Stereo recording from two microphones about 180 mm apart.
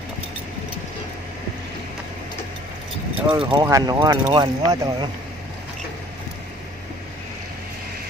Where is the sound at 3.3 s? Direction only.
25° right (ahead or behind).